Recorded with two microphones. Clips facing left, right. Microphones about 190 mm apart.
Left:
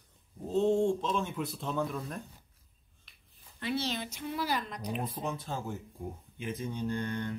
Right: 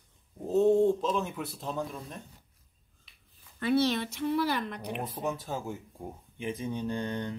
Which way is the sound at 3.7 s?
65° right (ahead or behind).